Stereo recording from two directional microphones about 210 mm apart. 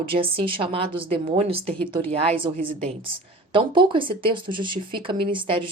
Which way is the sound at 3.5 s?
25° right (ahead or behind).